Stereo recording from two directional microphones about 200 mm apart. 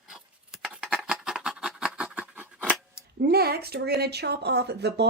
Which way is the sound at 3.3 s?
50° right (ahead or behind).